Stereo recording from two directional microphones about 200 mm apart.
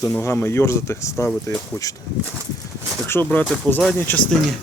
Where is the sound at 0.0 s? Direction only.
15° left (ahead or behind).